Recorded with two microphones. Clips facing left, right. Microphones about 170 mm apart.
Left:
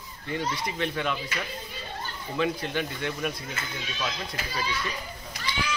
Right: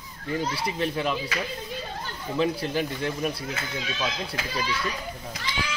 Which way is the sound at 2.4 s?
35° right (ahead or behind).